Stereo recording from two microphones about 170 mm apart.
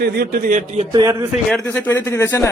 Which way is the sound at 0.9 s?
25° right (ahead or behind).